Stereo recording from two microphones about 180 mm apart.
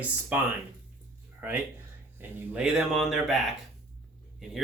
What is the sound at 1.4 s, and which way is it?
Speech, 10° right (ahead or behind).